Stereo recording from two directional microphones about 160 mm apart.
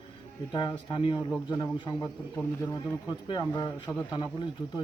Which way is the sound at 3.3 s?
20° left (ahead or behind).